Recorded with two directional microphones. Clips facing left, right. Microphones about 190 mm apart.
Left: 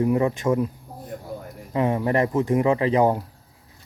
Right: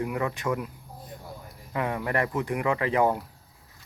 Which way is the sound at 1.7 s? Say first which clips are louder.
Left 6 dB; 25° left (ahead or behind).